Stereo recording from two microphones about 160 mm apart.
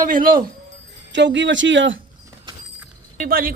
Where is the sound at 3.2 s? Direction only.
65° right (ahead or behind).